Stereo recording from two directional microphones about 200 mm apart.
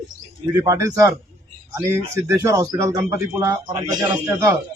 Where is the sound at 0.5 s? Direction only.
15° right (ahead or behind).